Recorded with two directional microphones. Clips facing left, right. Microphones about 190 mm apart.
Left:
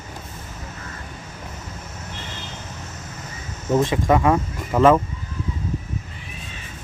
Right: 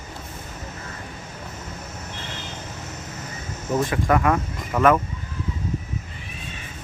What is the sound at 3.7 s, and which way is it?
Speech, 25° left (ahead or behind).